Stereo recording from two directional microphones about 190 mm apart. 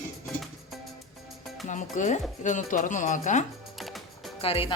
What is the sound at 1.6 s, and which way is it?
Speech, 40° left (ahead or behind).